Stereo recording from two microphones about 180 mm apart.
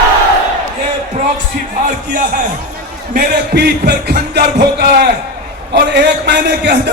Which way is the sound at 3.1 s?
60° right (ahead or behind).